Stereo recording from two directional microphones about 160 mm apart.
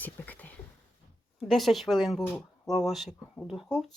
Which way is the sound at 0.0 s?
10° left (ahead or behind).